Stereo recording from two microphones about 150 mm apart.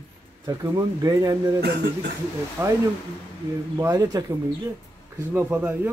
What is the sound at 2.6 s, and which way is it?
Speech, 20° right (ahead or behind).